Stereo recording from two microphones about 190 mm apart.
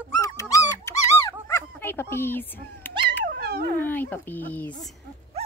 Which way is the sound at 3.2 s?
55° right (ahead or behind).